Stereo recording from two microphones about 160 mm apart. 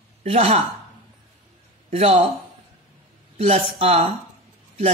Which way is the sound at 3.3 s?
40° right (ahead or behind).